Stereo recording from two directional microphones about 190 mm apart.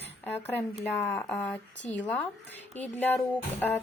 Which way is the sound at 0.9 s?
10° left (ahead or behind).